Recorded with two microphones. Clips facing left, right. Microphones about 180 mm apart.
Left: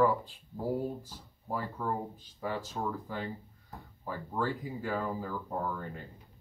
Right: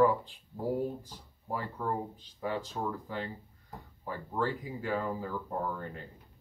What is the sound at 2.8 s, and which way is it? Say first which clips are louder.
Speech: left 2 dB; 5° right (ahead or behind).